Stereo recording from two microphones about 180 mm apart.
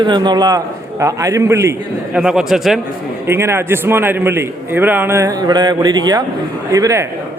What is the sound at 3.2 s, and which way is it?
A man's voice, 15° right (ahead or behind).